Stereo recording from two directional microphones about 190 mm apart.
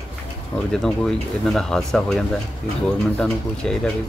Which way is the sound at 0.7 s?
Centre (ahead or behind).